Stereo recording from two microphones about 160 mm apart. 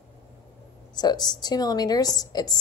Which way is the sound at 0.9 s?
25° left (ahead or behind).